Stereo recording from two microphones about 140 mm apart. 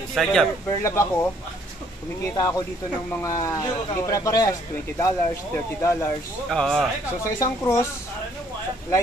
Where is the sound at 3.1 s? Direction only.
20° left (ahead or behind).